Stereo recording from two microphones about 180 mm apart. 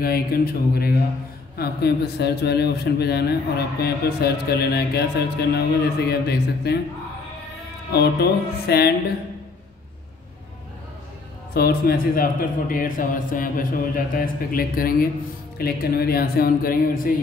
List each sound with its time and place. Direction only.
0.0 s speech: 60° left (ahead or behind)
7.9 s speech: 65° left (ahead or behind)
11.5 s a man's voice: 60° left (ahead or behind)